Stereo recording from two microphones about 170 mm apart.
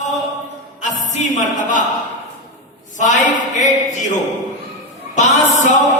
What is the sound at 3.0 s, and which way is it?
Speech, 45° left (ahead or behind).